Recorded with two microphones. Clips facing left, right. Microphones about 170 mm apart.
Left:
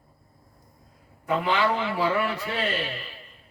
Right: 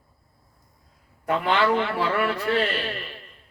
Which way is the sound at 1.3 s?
65° right (ahead or behind).